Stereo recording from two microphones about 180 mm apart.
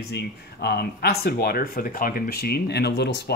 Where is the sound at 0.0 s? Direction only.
65° left (ahead or behind).